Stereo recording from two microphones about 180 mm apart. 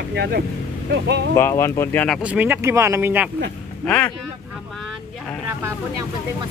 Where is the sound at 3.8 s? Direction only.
5° left (ahead or behind).